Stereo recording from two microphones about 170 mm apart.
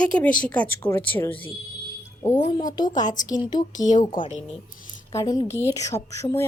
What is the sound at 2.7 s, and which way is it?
Speech, 25° left (ahead or behind).